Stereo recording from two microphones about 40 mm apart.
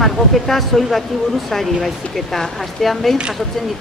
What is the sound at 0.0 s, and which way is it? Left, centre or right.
Speech, centre.